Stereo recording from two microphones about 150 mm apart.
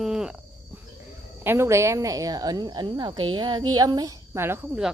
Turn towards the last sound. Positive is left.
turn(degrees=-15)  # may be behind; listen again after turning